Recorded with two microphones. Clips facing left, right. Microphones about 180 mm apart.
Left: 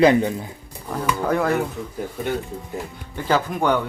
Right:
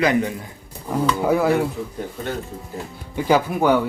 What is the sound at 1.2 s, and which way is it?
Speech, 10° right (ahead or behind).